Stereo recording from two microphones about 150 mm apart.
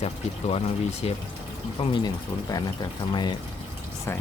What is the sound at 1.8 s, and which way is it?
Speech, 30° left (ahead or behind).